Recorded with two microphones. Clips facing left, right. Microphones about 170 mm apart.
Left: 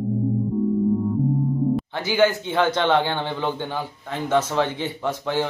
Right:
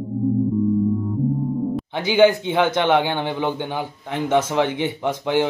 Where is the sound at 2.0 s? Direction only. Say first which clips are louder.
Right 6 dB; 15° right (ahead or behind).